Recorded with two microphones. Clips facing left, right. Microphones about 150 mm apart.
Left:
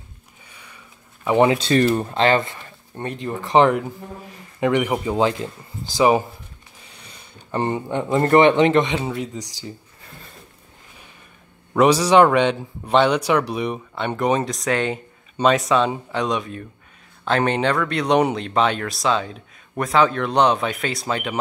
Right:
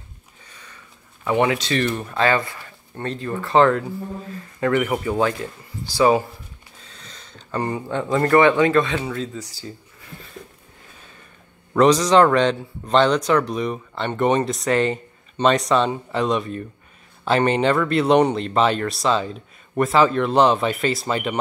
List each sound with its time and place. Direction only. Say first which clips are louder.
0.5 s sniff: even; 10° left (ahead or behind)
1.3 s speech: left 4 dB; 30° left (ahead or behind)
6.8 s a sound: right 1 dB; 15° left (ahead or behind)
7.5 s speech: left 2 dB; 25° left (ahead or behind)
11.7 s a man's voice: even; 10° left (ahead or behind)